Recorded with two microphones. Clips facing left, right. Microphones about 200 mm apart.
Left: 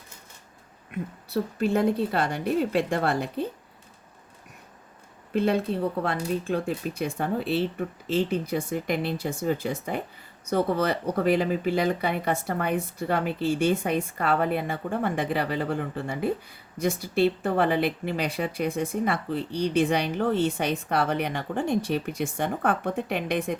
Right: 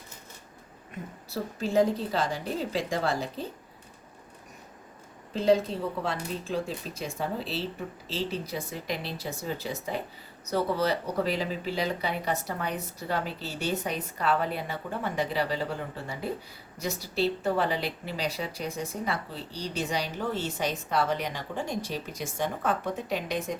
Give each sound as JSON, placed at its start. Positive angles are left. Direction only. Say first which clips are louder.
{"t": 0.9, "sound": "speech", "louder": "left 7 dB", "side_deg": 60}
{"t": 5.3, "sound": "speech", "louder": "even", "side_deg": 60}